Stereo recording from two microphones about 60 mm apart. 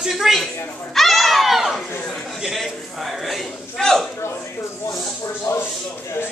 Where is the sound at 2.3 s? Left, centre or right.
Centre.